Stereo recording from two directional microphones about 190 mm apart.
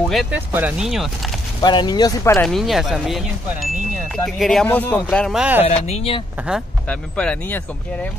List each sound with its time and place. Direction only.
0.1 s speech: centre (ahead or behind)
1.6 s speech: 25° left (ahead or behind)
2.3 s speech: centre (ahead or behind)
5.7 s speech: 35° left (ahead or behind)
6.9 s speech: 5° left (ahead or behind)